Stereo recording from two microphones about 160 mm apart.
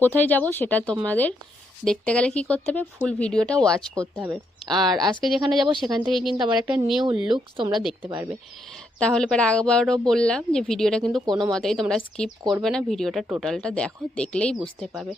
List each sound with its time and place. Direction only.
0.0 s speech: 10° left (ahead or behind)
3.9 s speech: 15° right (ahead or behind)
4.3 s speech: centre (ahead or behind)
7.3 s speech: 30° right (ahead or behind)
7.7 s speech: centre (ahead or behind)
9.0 s speech: 5° left (ahead or behind)